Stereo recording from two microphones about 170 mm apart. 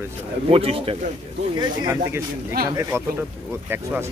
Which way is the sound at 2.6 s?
65° right (ahead or behind).